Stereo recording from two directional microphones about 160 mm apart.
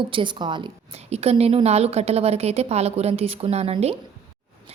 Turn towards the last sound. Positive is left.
turn(degrees=-40)  # may be behind; listen again after turning